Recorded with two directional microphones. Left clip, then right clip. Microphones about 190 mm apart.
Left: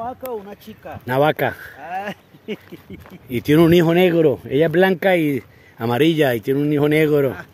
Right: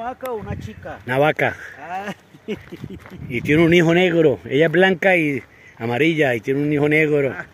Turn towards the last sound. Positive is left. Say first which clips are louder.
# left 1 dB
turn(degrees=15)  # may be behind; listen again after turning